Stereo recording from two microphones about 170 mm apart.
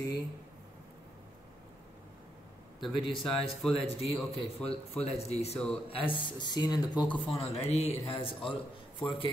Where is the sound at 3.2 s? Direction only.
Centre (ahead or behind).